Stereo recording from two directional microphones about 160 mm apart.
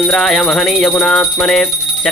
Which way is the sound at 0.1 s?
Centre (ahead or behind).